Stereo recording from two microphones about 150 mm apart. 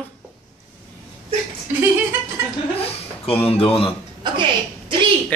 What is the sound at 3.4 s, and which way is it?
Speech, 40° left (ahead or behind).